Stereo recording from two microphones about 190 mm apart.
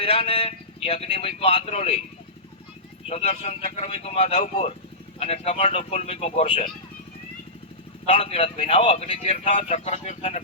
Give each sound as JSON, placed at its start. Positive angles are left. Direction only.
{"t": 0.0, "sound": "speech", "side_deg": 30}
{"t": 3.1, "sound": "speech", "side_deg": 35}
{"t": 8.0, "sound": "speech", "side_deg": 30}